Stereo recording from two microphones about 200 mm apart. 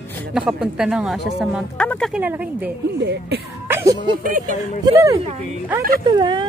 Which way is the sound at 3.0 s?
55° right (ahead or behind).